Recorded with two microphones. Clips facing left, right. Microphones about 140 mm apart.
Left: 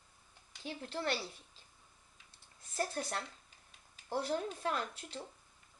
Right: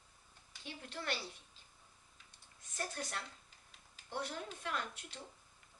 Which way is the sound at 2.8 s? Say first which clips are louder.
Left 6 dB; 35° left (ahead or behind).